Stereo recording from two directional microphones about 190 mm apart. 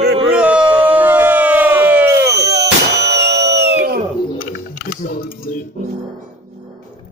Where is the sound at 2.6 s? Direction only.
60° right (ahead or behind).